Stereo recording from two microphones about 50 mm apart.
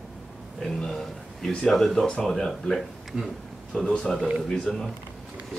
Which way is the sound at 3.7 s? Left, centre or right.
Centre.